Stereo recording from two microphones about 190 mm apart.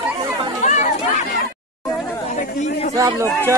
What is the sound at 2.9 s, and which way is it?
Speech, 15° right (ahead or behind).